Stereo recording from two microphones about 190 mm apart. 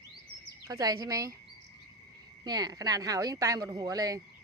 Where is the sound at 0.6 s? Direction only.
20° right (ahead or behind).